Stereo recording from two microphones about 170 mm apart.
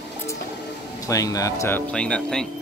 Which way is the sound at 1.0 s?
20° left (ahead or behind).